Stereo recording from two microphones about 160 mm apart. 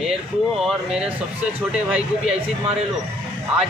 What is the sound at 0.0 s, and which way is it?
Speech, centre (ahead or behind).